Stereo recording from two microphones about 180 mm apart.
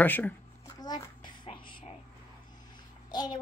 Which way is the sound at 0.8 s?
20° left (ahead or behind).